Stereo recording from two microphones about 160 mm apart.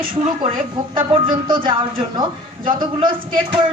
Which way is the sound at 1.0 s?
30° right (ahead or behind).